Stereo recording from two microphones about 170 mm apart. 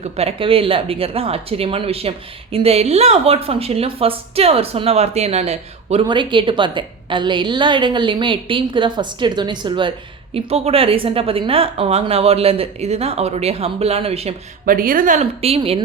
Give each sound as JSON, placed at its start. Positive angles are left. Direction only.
{"t": 0.0, "sound": "speech", "side_deg": -35}
{"t": 14.6, "sound": "speech", "side_deg": -55}